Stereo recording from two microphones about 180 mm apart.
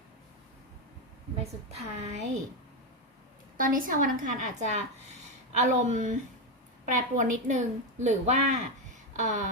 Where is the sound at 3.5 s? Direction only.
50° right (ahead or behind).